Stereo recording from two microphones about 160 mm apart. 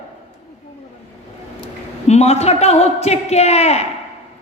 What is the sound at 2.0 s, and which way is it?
A woman's voice, 40° left (ahead or behind).